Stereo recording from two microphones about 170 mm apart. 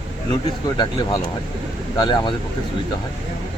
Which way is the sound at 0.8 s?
25° left (ahead or behind).